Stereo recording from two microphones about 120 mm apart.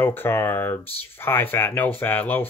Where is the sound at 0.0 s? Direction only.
15° left (ahead or behind).